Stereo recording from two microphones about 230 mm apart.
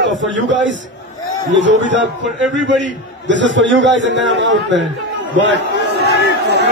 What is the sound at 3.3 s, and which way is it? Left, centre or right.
A man's voice, right.